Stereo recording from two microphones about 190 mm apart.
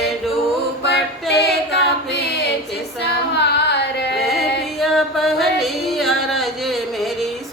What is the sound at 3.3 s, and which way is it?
Carnatic music, 65° left (ahead or behind).